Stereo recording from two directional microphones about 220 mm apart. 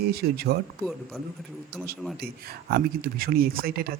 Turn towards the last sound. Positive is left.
turn(degrees=-45)  # may be behind; listen again after turning